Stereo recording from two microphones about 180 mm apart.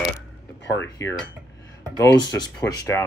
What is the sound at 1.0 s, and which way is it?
Speech, 15° left (ahead or behind).